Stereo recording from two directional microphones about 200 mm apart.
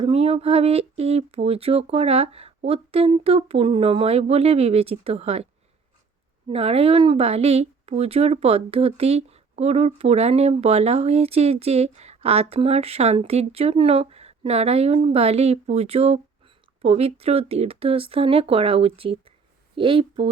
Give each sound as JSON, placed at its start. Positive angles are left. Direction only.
{"t": 0.0, "sound": "speech", "side_deg": -30}
{"t": 6.5, "sound": "speech", "side_deg": -30}